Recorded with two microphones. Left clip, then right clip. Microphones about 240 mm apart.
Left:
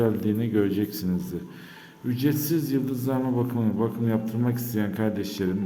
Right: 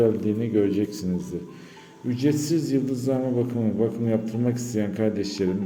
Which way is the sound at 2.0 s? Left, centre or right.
Centre.